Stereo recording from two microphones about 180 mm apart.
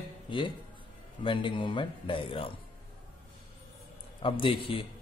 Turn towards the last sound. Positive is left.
turn(degrees=30)  # may be behind; listen again after turning